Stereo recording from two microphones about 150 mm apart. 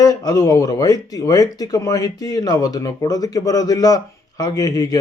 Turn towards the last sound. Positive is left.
turn(degrees=25)  # may be behind; listen again after turning